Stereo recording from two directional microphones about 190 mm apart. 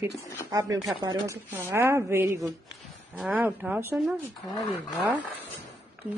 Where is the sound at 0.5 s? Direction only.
20° right (ahead or behind).